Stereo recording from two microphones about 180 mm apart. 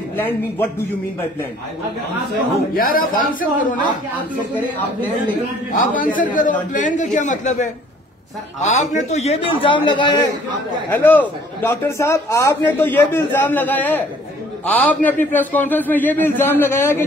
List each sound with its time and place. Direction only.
2.7 s a man's voice: 50° left (ahead or behind)
4.6 s a man's voice: 10° left (ahead or behind)
5.7 s a man's voice: 50° left (ahead or behind); by 10.3 s 25° left (ahead or behind)
10.9 s a man's voice: 10° left (ahead or behind)